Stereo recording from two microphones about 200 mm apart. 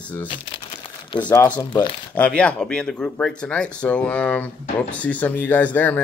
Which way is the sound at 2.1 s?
5° left (ahead or behind).